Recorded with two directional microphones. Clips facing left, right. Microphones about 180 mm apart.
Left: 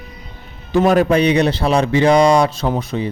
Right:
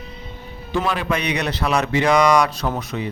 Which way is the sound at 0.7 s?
45° left (ahead or behind).